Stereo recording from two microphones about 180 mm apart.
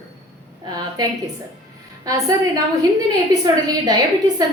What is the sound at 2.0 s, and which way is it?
A woman's voice, 20° right (ahead or behind).